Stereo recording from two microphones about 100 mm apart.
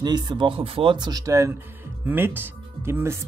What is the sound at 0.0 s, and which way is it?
Speech, 45° right (ahead or behind).